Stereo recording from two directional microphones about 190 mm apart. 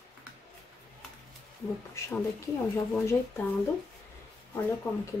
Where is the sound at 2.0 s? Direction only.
15° left (ahead or behind).